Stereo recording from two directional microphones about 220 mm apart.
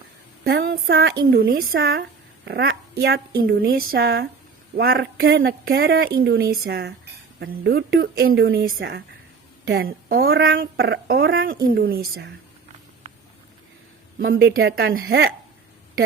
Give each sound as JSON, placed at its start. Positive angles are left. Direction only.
{"t": 0.4, "sound": "a woman's voice", "side_deg": -45}
{"t": 14.3, "sound": "a woman's voice", "side_deg": -50}